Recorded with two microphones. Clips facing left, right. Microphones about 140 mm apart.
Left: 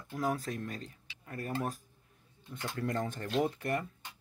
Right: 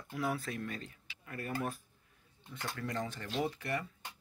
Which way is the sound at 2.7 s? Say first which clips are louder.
Left 5 dB; 50° left (ahead or behind).